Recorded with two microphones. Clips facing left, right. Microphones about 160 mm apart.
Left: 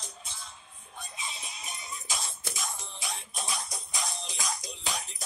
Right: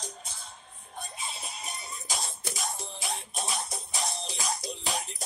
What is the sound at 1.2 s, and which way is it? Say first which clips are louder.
Music: right 2 dB; 45° right (ahead or behind).